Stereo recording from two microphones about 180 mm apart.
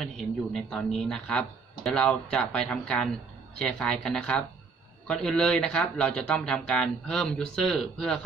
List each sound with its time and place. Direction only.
0.0 s speech: centre (ahead or behind)